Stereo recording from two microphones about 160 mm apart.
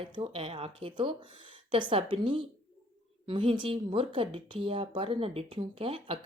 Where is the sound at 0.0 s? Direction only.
35° right (ahead or behind).